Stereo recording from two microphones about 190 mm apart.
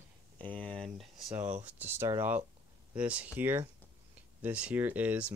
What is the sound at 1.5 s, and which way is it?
Speech, 35° right (ahead or behind).